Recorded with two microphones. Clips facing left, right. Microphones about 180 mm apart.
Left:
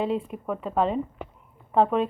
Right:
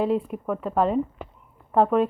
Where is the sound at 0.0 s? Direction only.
5° right (ahead or behind).